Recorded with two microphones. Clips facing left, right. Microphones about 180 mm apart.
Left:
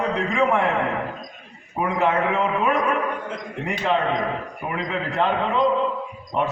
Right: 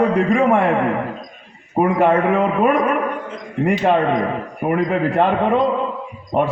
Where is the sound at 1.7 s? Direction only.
55° right (ahead or behind).